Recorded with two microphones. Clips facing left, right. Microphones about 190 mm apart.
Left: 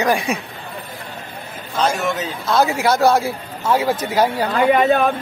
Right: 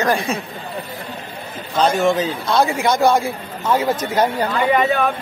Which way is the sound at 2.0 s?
30° right (ahead or behind).